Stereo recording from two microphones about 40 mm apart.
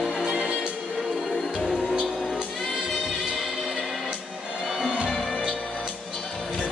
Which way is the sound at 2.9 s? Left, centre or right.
Centre.